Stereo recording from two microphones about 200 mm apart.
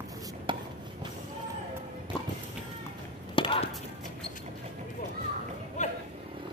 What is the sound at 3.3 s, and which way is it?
Chop, 25° left (ahead or behind).